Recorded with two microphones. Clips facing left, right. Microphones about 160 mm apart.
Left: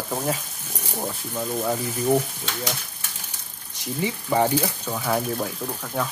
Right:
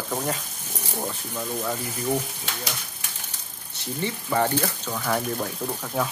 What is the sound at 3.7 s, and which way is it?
Speech, 10° left (ahead or behind).